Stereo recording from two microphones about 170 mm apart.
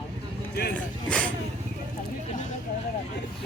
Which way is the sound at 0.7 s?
5° left (ahead or behind).